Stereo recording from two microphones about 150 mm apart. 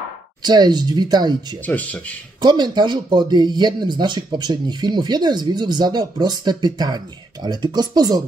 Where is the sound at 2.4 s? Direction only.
30° right (ahead or behind).